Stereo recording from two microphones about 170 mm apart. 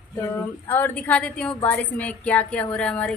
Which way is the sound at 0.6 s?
10° left (ahead or behind).